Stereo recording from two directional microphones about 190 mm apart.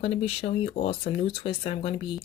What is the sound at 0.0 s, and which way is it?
Speech, 30° left (ahead or behind).